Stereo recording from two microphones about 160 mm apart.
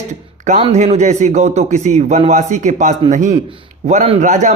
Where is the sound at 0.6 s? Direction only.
40° right (ahead or behind).